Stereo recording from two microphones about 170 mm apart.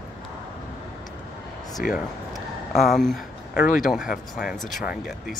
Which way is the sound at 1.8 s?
60° left (ahead or behind).